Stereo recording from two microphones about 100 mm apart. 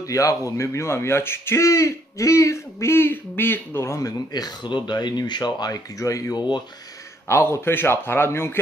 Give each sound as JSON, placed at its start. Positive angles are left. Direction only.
{"t": 0.0, "sound": "a man's voice", "side_deg": 35}
{"t": 4.3, "sound": "a man's voice", "side_deg": 45}